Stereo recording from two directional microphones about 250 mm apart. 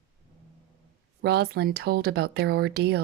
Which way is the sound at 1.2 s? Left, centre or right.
Right.